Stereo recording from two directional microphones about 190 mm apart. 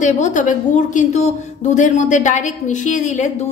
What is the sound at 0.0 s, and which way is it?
A woman's voice, 40° left (ahead or behind).